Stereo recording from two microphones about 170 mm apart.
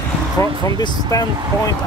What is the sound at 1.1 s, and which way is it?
Speech, 20° left (ahead or behind).